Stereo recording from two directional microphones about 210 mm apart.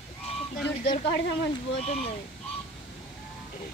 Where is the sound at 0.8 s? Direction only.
25° left (ahead or behind).